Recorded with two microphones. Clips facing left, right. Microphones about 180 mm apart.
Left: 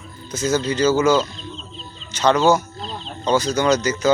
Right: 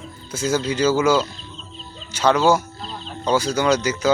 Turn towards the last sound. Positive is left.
turn(degrees=-10)  # may be behind; listen again after turning